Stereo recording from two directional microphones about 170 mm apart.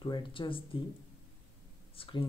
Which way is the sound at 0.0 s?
30° left (ahead or behind).